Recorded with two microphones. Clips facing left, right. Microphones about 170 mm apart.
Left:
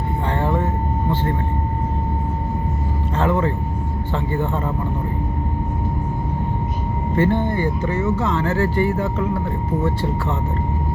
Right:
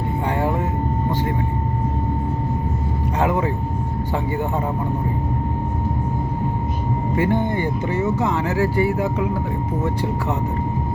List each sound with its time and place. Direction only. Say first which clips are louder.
0.3 s vehicle: left 1 dB; 10° right (ahead or behind)
3.2 s speech: left 1 dB; 15° right (ahead or behind)
7.2 s speech: left 2 dB; 15° right (ahead or behind)